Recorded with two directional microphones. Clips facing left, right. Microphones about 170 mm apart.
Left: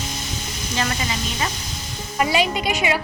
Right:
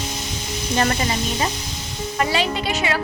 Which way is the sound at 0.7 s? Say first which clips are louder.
Right 4 dB; 45° right (ahead or behind).